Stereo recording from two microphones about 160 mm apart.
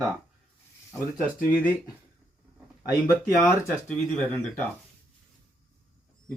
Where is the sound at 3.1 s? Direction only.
15° left (ahead or behind).